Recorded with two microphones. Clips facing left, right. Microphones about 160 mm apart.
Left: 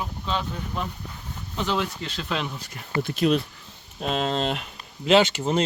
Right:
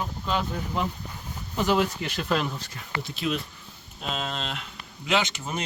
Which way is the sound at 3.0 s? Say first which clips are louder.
Left 8 dB; 50° left (ahead or behind).